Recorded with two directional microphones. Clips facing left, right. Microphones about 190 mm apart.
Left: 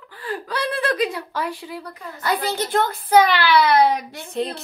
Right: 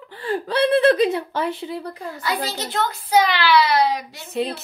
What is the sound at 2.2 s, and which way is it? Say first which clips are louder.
A child's voice: left 4 dB; 55° left (ahead or behind).